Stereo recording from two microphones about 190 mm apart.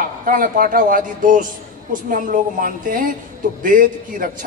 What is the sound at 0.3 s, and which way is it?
A man's voice, 45° right (ahead or behind).